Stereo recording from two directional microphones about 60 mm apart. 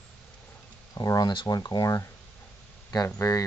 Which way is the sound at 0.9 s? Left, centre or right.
Left.